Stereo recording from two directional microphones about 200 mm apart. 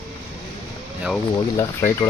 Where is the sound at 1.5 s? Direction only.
15° left (ahead or behind).